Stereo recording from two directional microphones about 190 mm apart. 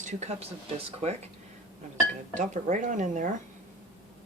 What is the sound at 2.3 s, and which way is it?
Speech, 40° right (ahead or behind).